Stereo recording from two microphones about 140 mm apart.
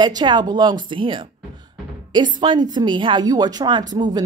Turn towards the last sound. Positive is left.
turn(degrees=-30)  # may be behind; listen again after turning